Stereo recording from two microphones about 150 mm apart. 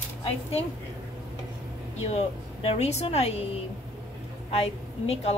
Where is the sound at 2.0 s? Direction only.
45° left (ahead or behind).